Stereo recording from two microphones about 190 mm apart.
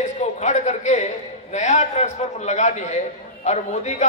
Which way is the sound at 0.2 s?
40° left (ahead or behind).